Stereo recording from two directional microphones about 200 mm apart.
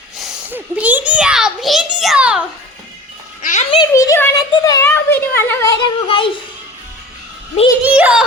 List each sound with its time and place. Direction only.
0.2 s a child's voice: 5° right (ahead or behind)
3.4 s a sound: 35° left (ahead or behind)
3.8 s a sound: 15° left (ahead or behind)
4.5 s a child's voice: 20° left (ahead or behind)
6.1 s speech: 25° left (ahead or behind)
7.9 s speech: 5° right (ahead or behind)